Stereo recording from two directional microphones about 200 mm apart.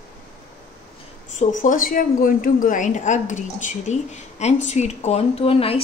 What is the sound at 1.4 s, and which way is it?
A woman's voice, 40° left (ahead or behind).